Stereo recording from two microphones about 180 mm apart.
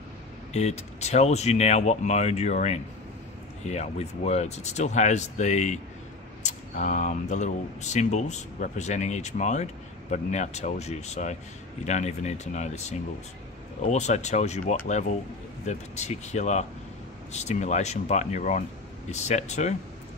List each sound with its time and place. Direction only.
0.5 s speech: 35° left (ahead or behind)